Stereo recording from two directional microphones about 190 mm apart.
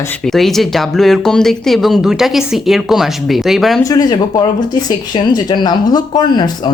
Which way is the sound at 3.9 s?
20° left (ahead or behind).